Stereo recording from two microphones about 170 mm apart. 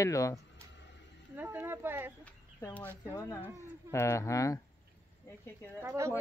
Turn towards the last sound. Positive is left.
turn(degrees=-20)  # may be behind; listen again after turning